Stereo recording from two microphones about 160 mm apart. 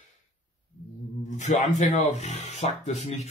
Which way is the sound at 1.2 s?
50° left (ahead or behind).